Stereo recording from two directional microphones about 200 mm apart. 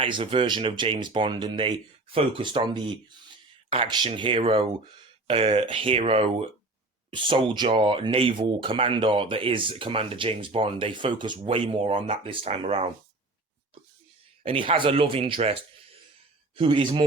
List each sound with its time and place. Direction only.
0.0 s speech: 25° right (ahead or behind)
14.4 s speech: 25° right (ahead or behind)
16.6 s speech: 25° right (ahead or behind)